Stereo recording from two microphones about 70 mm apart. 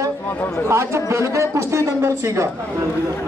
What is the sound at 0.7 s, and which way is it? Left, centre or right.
A man's voice, right.